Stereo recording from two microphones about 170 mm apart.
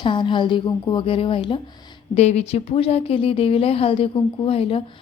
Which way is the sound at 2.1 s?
40° left (ahead or behind).